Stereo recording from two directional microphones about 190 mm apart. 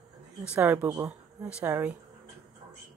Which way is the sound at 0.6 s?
10° right (ahead or behind).